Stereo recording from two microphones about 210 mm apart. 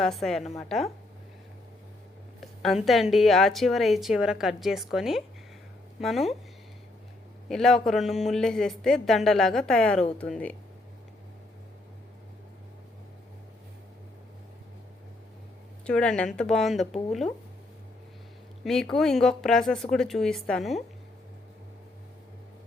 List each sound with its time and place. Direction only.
0.0 s a woman's voice: centre (ahead or behind)
2.4 s a woman's voice: centre (ahead or behind)
7.4 s a woman's voice: centre (ahead or behind)
15.9 s a woman's voice: 5° left (ahead or behind)
18.6 s a woman's voice: centre (ahead or behind)